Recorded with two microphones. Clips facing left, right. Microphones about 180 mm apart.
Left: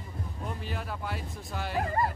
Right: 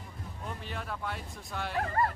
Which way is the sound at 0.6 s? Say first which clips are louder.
Right 1 dB; 5° left (ahead or behind).